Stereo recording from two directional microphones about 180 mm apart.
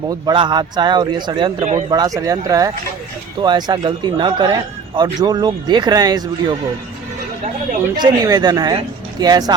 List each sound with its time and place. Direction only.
0.1 s a man's voice: 25° right (ahead or behind)
1.5 s a man's voice: 40° right (ahead or behind)
1.9 s a man's voice: 20° right (ahead or behind)
7.9 s a man's voice: 25° right (ahead or behind)